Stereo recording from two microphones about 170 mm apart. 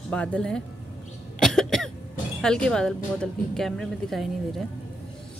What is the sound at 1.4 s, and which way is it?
Cough, centre (ahead or behind).